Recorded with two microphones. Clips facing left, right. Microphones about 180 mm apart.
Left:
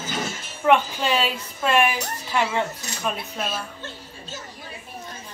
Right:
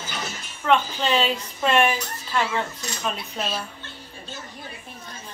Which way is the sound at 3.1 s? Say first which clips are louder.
Even; 50° left (ahead or behind).